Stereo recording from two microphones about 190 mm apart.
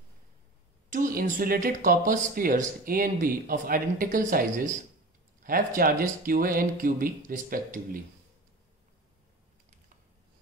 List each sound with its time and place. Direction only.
0.8 s speech: 45° right (ahead or behind)